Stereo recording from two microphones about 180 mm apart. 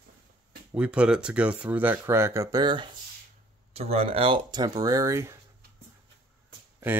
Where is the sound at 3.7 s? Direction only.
35° right (ahead or behind); by 5.4 s 15° right (ahead or behind).